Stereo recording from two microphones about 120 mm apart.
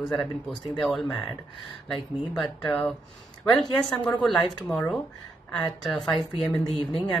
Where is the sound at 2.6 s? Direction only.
5° left (ahead or behind).